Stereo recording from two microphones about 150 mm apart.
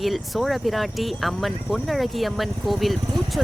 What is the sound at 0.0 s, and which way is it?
Speech, centre (ahead or behind).